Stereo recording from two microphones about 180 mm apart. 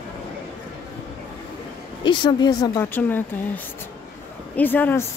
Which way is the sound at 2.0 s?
25° left (ahead or behind).